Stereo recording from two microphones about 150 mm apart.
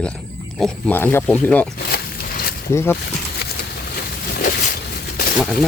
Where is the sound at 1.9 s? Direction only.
80° left.